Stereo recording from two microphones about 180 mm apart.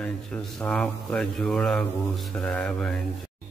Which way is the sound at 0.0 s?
5° left (ahead or behind).